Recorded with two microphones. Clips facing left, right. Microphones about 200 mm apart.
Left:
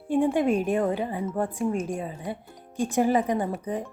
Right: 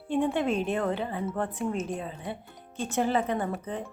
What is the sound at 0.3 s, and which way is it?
A woman's voice, 15° left (ahead or behind).